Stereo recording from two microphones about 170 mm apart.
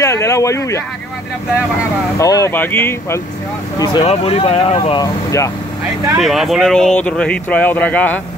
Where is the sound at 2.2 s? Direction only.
20° left (ahead or behind).